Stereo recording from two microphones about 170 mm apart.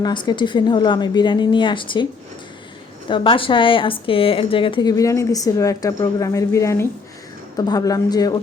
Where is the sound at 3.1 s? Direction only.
30° left (ahead or behind).